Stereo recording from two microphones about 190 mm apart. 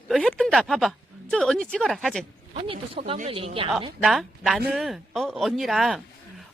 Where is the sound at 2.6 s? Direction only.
30° right (ahead or behind).